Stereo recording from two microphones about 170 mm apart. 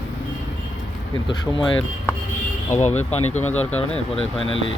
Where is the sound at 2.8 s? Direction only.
40° left (ahead or behind).